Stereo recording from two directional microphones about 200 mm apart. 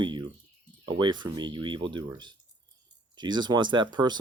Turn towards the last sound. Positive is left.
turn(degrees=-20)  # may be behind; listen again after turning